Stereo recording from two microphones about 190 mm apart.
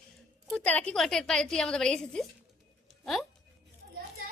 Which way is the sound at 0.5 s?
5° left (ahead or behind).